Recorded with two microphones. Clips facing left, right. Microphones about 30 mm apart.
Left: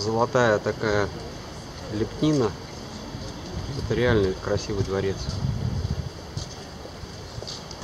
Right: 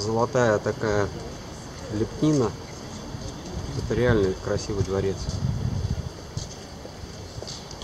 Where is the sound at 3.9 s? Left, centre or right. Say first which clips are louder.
Even; left.